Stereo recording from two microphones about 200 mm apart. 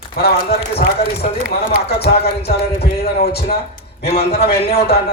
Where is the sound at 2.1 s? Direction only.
30° left (ahead or behind).